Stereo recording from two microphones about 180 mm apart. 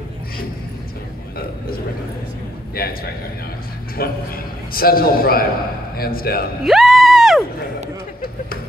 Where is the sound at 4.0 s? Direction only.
55° left (ahead or behind).